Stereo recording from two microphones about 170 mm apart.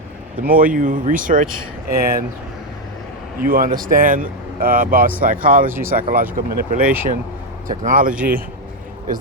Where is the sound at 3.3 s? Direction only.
55° right (ahead or behind).